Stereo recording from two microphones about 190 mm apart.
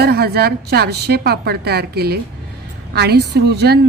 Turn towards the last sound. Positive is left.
turn(degrees=-60)  # may be behind; listen again after turning